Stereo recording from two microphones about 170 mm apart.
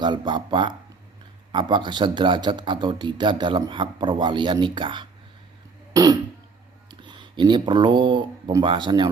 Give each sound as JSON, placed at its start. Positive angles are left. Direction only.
{"t": 0.0, "sound": "speech", "side_deg": -25}
{"t": 5.9, "sound": "throat clearing", "side_deg": -20}
{"t": 7.0, "sound": "speech", "side_deg": -25}